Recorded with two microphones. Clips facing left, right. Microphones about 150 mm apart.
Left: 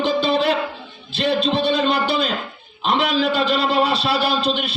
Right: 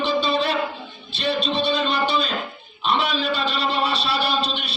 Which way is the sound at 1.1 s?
90° left.